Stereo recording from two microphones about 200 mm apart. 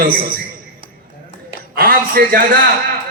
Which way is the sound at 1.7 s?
45° right (ahead or behind).